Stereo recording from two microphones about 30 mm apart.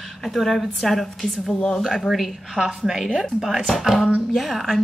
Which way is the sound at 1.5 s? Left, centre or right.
Left.